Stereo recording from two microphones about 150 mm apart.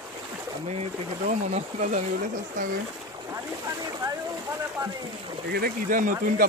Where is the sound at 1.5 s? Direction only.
50° right (ahead or behind).